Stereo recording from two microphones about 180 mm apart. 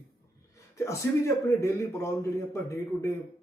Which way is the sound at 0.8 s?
15° left (ahead or behind).